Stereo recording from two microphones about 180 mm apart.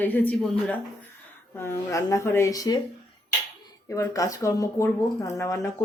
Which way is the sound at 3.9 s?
15° left (ahead or behind).